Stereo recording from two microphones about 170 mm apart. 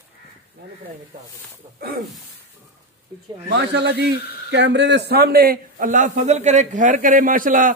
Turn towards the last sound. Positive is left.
turn(degrees=-50)  # may be behind; listen again after turning